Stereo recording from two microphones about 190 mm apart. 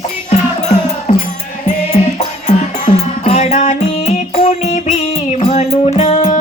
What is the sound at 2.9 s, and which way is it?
Music, 30° left (ahead or behind).